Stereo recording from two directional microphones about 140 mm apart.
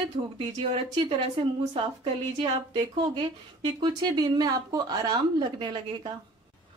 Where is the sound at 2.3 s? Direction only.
40° right (ahead or behind).